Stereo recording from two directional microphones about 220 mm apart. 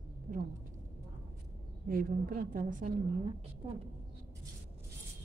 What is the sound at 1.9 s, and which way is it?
A woman's voice, 40° right (ahead or behind).